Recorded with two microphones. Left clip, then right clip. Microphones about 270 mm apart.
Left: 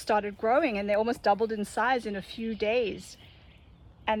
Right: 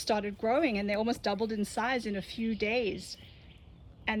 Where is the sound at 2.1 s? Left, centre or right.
Centre.